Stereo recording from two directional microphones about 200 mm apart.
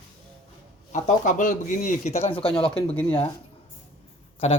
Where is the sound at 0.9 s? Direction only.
40° left (ahead or behind).